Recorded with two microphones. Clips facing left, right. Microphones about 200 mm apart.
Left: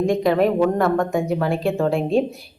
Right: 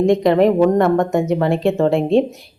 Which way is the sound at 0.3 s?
20° right (ahead or behind).